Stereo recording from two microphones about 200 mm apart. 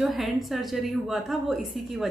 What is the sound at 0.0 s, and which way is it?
Speech, centre (ahead or behind).